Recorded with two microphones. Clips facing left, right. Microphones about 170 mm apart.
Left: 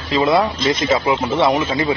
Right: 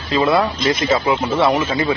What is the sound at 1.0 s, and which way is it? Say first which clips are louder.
Speech: even; 25° left (ahead or behind).